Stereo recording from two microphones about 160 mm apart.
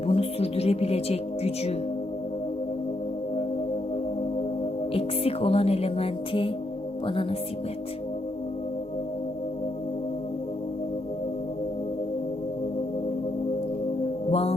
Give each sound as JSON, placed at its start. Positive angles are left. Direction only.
{"t": 0.1, "sound": "speech", "side_deg": 40}
{"t": 4.9, "sound": "music", "side_deg": 35}
{"t": 14.3, "sound": "mantra", "side_deg": 40}